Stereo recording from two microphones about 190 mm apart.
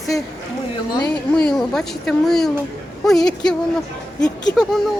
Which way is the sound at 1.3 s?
5° left (ahead or behind).